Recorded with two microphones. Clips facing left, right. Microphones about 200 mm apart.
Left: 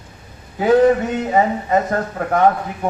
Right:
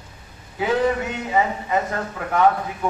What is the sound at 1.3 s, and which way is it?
Speech, 40° left (ahead or behind).